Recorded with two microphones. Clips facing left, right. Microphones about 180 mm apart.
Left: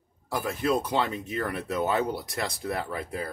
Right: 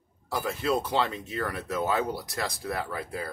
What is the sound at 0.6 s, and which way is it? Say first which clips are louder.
Speech: left 1 dB; 15° left (ahead or behind).